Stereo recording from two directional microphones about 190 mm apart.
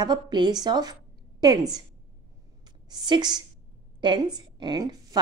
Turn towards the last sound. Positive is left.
turn(degrees=-25)  # may be behind; listen again after turning